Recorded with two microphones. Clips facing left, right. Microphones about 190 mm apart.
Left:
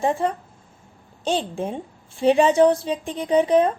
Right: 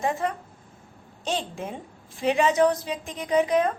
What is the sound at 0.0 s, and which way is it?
A woman's voice, 30° left (ahead or behind).